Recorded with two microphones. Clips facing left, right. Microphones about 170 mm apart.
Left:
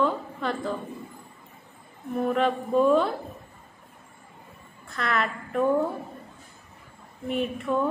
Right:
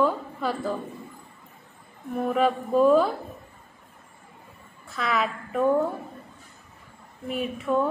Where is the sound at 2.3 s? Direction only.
Centre (ahead or behind).